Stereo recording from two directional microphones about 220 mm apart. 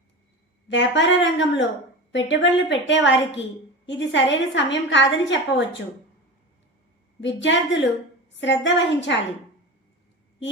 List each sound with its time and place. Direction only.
0.7 s a woman's voice: 55° left (ahead or behind)
7.2 s a woman's voice: 55° left (ahead or behind)